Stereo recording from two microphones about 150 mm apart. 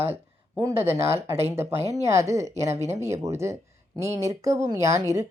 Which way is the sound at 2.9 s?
20° right (ahead or behind).